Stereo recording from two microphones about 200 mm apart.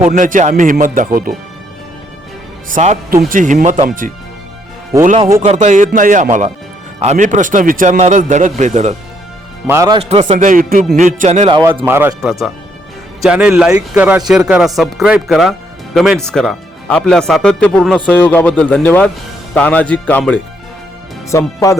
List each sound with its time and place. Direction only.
0.1 s a man's voice: 40° right (ahead or behind)
2.6 s a man's voice: 40° right (ahead or behind)
9.6 s speech: 15° right (ahead or behind)
10.0 s a man's voice: 30° right (ahead or behind)
11.9 s speech: 10° right (ahead or behind); by 21.8 s 15° left (ahead or behind)